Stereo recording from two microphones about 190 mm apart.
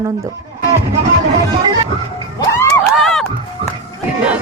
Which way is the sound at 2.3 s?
15° left (ahead or behind).